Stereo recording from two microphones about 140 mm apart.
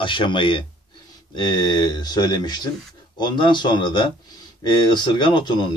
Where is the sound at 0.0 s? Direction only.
35° left (ahead or behind).